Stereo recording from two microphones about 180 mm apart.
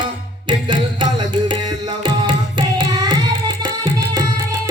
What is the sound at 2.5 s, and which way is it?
Tabla, 25° right (ahead or behind).